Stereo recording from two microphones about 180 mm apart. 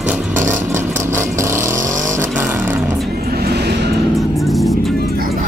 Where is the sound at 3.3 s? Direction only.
60° right (ahead or behind).